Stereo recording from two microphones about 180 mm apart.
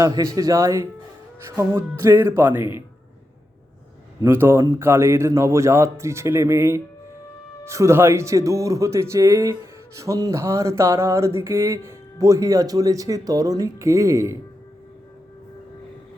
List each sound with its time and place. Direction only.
0.0 s speech: 20° right (ahead or behind)
4.2 s speech: 15° right (ahead or behind)